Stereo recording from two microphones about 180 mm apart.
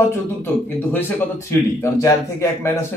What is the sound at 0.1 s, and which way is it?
Speech, 10° left (ahead or behind).